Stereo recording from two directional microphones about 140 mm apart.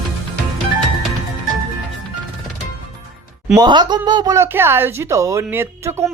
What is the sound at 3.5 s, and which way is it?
Speech, 30° right (ahead or behind).